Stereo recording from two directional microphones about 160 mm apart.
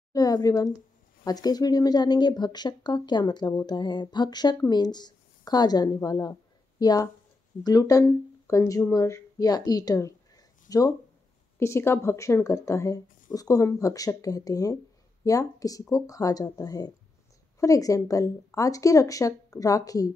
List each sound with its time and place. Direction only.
0.1 s speech: 25° left (ahead or behind)